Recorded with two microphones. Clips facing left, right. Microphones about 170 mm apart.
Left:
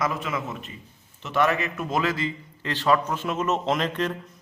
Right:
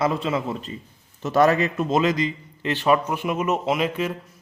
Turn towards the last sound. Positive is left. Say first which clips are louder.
# right 2 dB
turn(degrees=-5)  # may be behind; listen again after turning